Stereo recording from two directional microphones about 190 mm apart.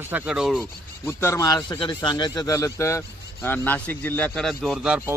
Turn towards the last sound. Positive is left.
turn(degrees=-5)  # may be behind; listen again after turning